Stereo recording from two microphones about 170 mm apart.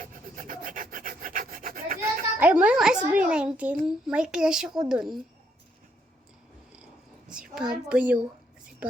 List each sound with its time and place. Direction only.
0.0 s rub: 55° right (ahead or behind)
2.4 s music: 10° right (ahead or behind)
3.8 s a woman's voice: 5° right (ahead or behind)
7.3 s a sound: 5° right (ahead or behind)
7.9 s speech: 5° right (ahead or behind)